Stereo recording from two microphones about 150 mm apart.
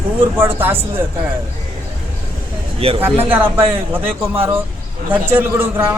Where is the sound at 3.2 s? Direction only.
15° right (ahead or behind).